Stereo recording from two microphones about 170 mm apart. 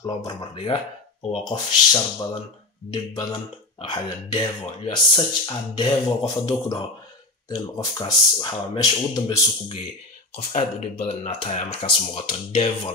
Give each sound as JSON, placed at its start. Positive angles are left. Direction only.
{"t": 0.0, "sound": "speech", "side_deg": 25}
{"t": 10.3, "sound": "speech", "side_deg": 40}